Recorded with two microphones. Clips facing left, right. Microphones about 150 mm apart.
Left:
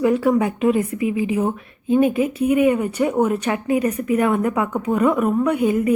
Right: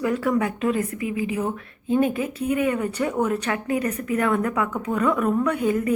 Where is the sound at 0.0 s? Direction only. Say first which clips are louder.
Left 5 dB; 25° left (ahead or behind).